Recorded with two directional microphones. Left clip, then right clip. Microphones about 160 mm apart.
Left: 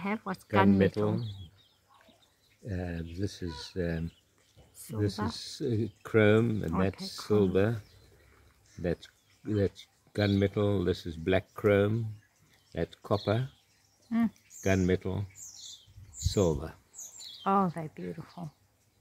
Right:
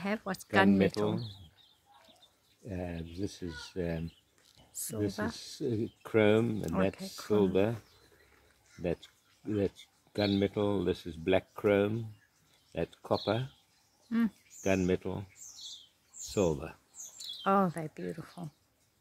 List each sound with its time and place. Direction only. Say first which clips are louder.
0.0 s speech: even; 5° right (ahead or behind)
2.6 s speech: left 1 dB; centre (ahead or behind)
5.0 s speech: left 2 dB; 5° left (ahead or behind)
6.6 s speech: even; centre (ahead or behind)
8.8 s speech: left 2 dB; 10° left (ahead or behind)
14.6 s speech: left 1 dB; 20° left (ahead or behind)
17.4 s speech: left 1 dB; 5° right (ahead or behind)